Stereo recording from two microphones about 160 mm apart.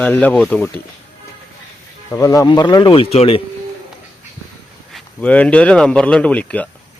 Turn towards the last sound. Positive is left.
turn(degrees=10)  # may be behind; listen again after turning